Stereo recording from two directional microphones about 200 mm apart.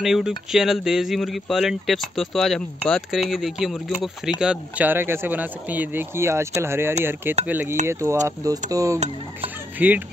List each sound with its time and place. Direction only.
0.0 s speech: centre (ahead or behind)